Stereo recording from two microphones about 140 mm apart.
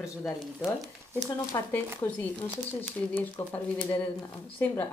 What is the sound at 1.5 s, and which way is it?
Speech, 20° left (ahead or behind).